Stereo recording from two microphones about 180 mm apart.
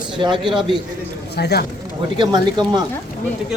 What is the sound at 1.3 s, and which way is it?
Speech, 65° left (ahead or behind).